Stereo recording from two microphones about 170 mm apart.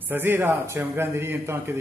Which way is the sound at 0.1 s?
15° right (ahead or behind).